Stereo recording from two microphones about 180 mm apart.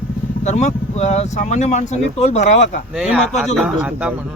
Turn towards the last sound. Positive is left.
turn(degrees=-5)  # may be behind; listen again after turning